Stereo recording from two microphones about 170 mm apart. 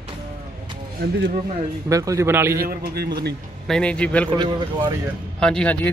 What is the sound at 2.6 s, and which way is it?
Speech, 60° right (ahead or behind).